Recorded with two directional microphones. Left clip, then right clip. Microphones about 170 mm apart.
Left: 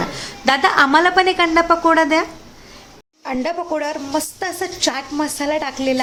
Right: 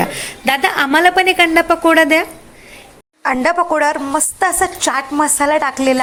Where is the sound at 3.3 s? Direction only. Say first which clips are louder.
Right 7 dB; 10° right (ahead or behind).